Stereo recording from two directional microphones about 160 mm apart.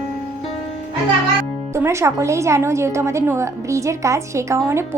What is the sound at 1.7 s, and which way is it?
A woman's voice, 15° right (ahead or behind).